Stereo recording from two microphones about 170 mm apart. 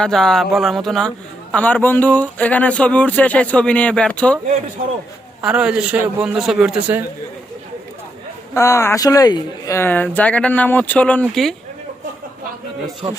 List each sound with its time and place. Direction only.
0.0 s speech: 5° left (ahead or behind)
5.4 s speech: 5° right (ahead or behind)
8.5 s speech: 20° left (ahead or behind)
13.0 s speech: 35° right (ahead or behind)